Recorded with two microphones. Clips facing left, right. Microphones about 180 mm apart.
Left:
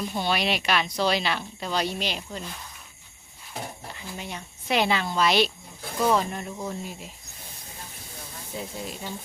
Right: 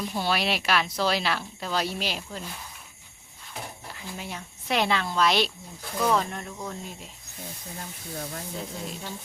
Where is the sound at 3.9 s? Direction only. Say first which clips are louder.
Left 1 dB; centre (ahead or behind).